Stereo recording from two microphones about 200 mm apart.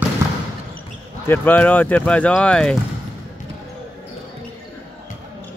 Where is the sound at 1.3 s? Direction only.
10° left (ahead or behind).